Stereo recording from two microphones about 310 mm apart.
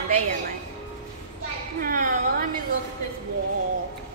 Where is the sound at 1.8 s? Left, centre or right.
Right.